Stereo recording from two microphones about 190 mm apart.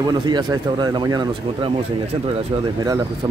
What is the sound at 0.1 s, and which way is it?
Speech, 20° right (ahead or behind).